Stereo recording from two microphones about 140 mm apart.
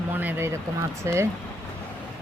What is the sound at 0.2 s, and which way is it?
Speech, 15° right (ahead or behind).